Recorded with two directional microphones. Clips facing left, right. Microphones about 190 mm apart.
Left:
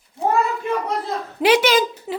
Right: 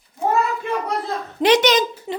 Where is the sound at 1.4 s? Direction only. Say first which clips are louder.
Even; 5° left (ahead or behind).